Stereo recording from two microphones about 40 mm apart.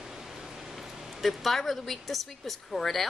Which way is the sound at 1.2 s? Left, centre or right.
Centre.